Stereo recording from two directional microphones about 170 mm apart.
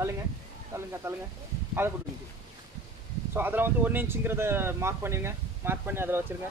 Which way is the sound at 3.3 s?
10° right (ahead or behind).